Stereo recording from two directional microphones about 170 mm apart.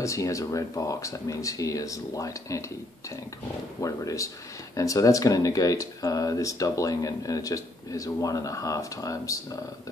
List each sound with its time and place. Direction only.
0.0 s speech: 20° left (ahead or behind)
3.8 s speech: 20° left (ahead or behind)